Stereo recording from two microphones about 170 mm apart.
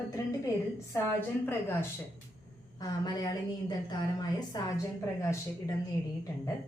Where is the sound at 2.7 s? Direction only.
25° left (ahead or behind).